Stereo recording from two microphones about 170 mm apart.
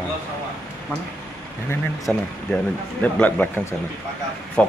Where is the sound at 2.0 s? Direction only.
5° left (ahead or behind).